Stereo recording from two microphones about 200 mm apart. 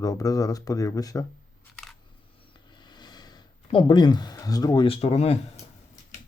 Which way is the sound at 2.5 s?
25° left (ahead or behind).